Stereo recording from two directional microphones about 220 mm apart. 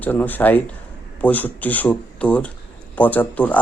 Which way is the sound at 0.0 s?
10° left (ahead or behind).